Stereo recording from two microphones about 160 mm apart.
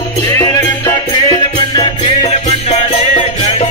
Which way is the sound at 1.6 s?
30° left (ahead or behind).